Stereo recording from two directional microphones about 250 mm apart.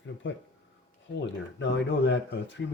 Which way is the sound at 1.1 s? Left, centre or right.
Left.